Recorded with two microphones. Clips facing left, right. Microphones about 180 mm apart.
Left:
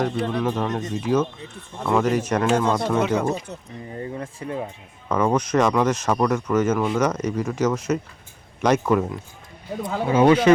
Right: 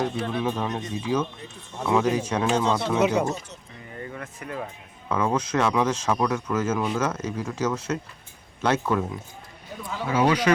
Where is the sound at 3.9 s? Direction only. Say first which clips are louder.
Left 5 dB; 30° left (ahead or behind).